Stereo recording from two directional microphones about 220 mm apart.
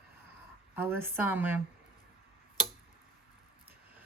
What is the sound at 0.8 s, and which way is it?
Speech, 10° right (ahead or behind).